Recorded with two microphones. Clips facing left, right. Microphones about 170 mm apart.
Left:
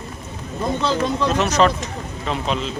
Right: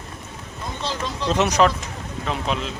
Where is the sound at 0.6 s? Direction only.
60° left (ahead or behind).